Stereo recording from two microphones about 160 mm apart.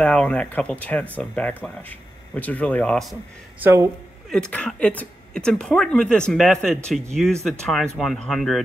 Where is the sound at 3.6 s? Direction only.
20° right (ahead or behind).